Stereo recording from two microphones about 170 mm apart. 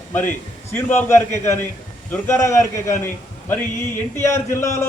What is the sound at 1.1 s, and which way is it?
A man's voice, 15° left (ahead or behind).